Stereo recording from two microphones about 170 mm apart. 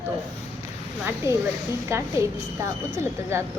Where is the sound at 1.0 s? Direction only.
15° right (ahead or behind).